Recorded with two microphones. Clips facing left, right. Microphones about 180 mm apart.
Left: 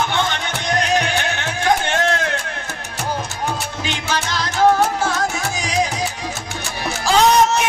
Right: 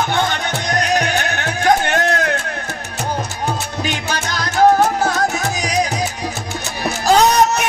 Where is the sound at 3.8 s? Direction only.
45° right (ahead or behind).